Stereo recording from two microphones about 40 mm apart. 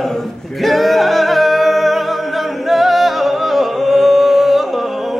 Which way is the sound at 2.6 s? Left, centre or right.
Centre.